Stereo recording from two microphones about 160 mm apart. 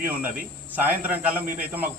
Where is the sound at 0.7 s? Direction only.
10° right (ahead or behind).